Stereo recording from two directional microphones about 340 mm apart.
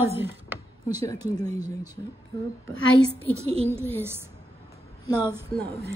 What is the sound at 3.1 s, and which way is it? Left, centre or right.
Speech, centre.